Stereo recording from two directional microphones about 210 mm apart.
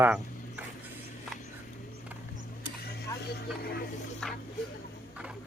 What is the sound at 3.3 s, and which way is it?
Vehicle, 50° left (ahead or behind).